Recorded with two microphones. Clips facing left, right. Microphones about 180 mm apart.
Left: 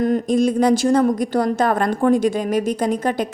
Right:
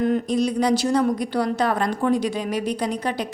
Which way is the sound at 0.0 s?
45° left (ahead or behind).